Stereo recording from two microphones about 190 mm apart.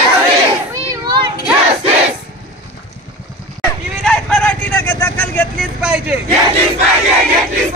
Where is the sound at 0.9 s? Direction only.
20° right (ahead or behind).